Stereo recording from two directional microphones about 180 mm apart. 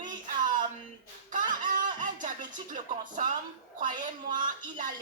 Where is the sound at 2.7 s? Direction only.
45° right (ahead or behind).